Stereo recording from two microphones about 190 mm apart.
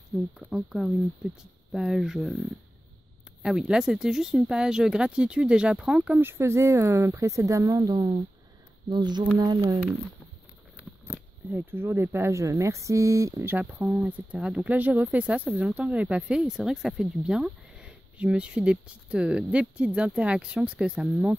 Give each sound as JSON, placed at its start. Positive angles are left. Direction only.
{"t": 0.4, "sound": "speech", "side_deg": -5}
{"t": 3.4, "sound": "speech", "side_deg": -5}
{"t": 8.9, "sound": "a sound", "side_deg": -25}
{"t": 11.1, "sound": "speech", "side_deg": -10}